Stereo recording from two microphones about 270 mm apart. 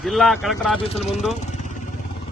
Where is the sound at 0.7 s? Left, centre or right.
Left.